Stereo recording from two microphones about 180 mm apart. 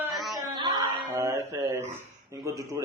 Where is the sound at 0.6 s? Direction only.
25° right (ahead or behind).